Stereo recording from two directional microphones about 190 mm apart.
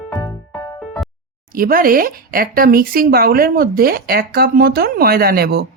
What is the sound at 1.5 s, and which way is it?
A woman's voice, 50° right (ahead or behind).